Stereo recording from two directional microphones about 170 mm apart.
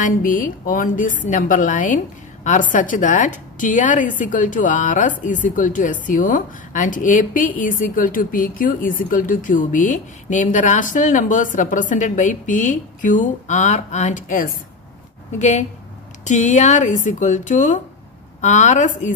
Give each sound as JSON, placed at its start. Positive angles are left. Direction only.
{"t": 0.0, "sound": "a woman's voice", "side_deg": 55}